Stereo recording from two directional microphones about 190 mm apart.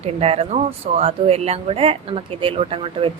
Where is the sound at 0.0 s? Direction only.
35° right (ahead or behind).